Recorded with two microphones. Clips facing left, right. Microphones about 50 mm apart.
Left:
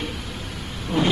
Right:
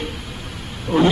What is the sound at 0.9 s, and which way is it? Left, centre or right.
Speech, right.